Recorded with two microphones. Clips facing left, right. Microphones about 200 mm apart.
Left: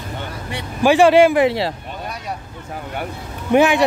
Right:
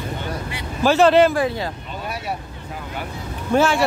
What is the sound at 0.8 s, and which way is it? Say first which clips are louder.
Speech: left 3 dB; 10° left (ahead or behind).